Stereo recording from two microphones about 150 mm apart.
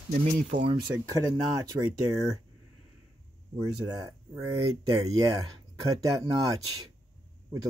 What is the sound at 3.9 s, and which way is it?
Speech, 25° right (ahead or behind).